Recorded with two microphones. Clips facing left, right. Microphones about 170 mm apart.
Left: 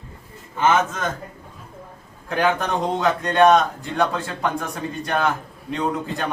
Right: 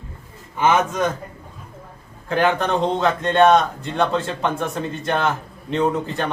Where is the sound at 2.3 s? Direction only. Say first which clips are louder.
Right 2 dB; centre (ahead or behind).